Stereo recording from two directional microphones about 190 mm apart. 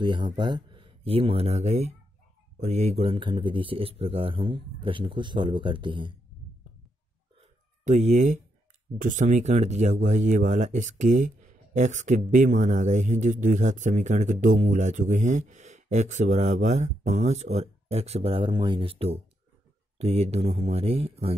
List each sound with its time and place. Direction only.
0.0 s speech: 25° right (ahead or behind)
7.8 s speech: 40° right (ahead or behind)